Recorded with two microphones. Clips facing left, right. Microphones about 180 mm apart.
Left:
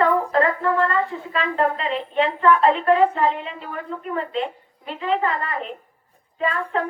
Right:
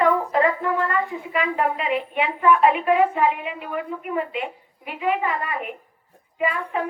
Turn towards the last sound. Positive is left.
turn(degrees=-10)  # may be behind; listen again after turning